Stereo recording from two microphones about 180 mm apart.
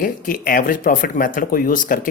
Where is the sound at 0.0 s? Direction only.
50° left (ahead or behind).